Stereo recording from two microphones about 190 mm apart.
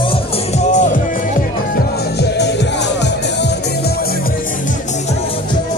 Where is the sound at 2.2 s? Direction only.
60° left (ahead or behind).